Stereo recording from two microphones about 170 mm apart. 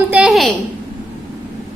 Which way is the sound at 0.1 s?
5° right (ahead or behind).